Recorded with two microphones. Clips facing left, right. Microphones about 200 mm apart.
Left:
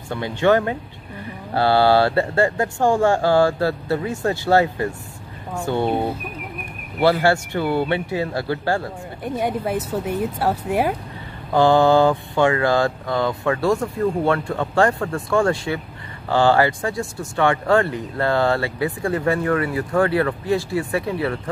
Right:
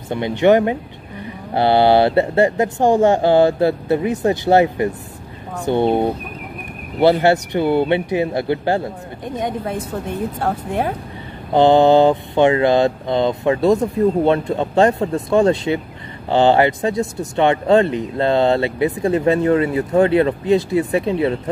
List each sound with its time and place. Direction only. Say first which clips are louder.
0.1 s speech: right 4 dB; 20° right (ahead or behind)
9.2 s speech: left 1 dB; 10° left (ahead or behind)
11.5 s speech: right 3 dB; 20° right (ahead or behind)